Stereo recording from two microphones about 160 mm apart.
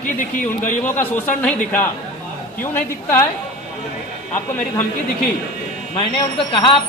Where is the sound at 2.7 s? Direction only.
15° left (ahead or behind).